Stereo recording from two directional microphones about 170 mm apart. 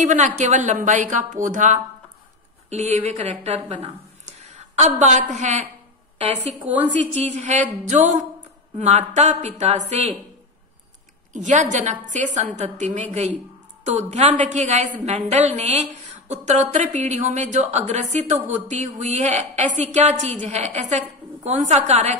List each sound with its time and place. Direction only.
0.0 s a woman's voice: 45° right (ahead or behind)
7.2 s a woman's voice: 45° right (ahead or behind)
11.3 s a woman's voice: 45° right (ahead or behind)